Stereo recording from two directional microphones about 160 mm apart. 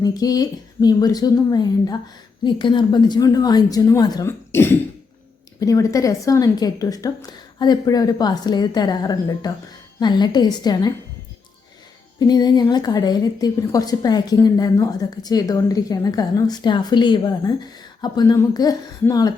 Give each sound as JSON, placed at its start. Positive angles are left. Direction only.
{"t": 0.0, "sound": "a woman's voice", "side_deg": 25}
{"t": 12.3, "sound": "a woman's voice", "side_deg": 25}